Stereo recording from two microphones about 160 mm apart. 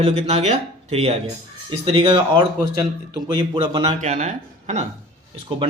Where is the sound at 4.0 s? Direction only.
50° right (ahead or behind).